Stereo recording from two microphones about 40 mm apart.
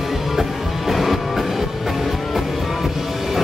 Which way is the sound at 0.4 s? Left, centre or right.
Centre.